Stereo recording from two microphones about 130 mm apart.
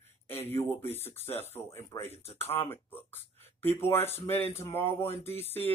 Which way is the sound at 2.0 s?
55° left (ahead or behind).